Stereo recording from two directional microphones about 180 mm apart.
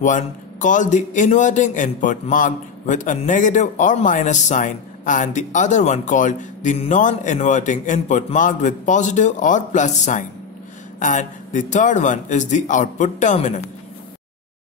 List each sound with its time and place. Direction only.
0.0 s a man's voice: 45° left (ahead or behind)